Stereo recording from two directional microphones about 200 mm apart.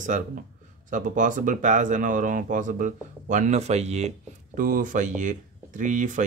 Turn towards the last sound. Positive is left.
turn(degrees=-40)  # may be behind; listen again after turning